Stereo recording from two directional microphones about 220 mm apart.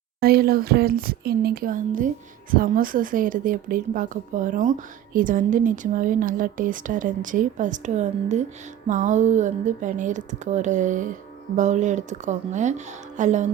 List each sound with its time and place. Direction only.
0.2 s a woman's voice: 45° right (ahead or behind)